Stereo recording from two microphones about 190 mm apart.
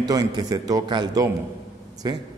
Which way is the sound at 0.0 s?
20° right (ahead or behind).